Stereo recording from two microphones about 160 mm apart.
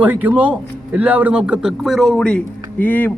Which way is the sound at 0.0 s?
10° right (ahead or behind).